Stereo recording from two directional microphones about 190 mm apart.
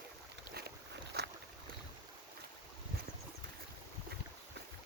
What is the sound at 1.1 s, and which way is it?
Boat, 55° right (ahead or behind).